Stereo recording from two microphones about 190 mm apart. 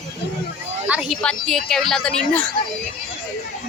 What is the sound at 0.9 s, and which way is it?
Speech, 5° right (ahead or behind).